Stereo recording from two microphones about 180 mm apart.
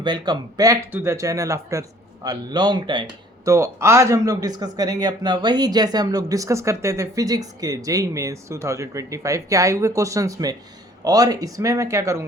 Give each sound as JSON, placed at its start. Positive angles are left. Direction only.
{"t": 0.0, "sound": "speech", "side_deg": -25}